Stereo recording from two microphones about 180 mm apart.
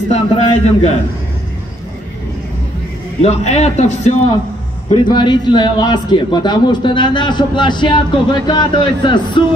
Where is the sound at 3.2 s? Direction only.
35° left (ahead or behind).